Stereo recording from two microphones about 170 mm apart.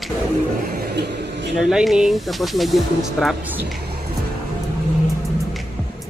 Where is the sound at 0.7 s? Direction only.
70° right (ahead or behind).